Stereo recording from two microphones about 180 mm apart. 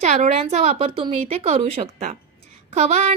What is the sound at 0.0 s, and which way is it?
A woman's voice, 40° right (ahead or behind).